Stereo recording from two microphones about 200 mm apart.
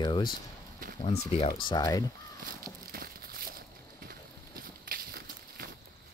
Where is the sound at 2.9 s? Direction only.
50° right (ahead or behind).